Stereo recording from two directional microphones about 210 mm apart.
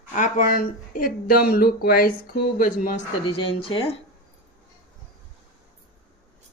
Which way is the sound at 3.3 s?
25° left (ahead or behind).